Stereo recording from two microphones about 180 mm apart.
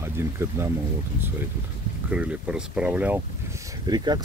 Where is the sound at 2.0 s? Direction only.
5° right (ahead or behind); by 4.2 s 25° right (ahead or behind).